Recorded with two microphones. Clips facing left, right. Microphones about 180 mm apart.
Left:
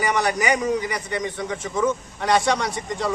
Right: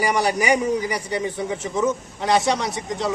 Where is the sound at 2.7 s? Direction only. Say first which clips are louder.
Right 1 dB; centre (ahead or behind).